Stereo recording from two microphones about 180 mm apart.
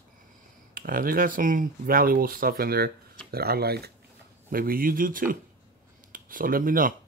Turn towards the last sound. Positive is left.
turn(degrees=-50)  # may be behind; listen again after turning